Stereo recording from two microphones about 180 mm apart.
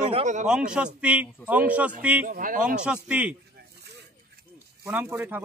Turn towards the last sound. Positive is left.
turn(degrees=-10)  # may be behind; listen again after turning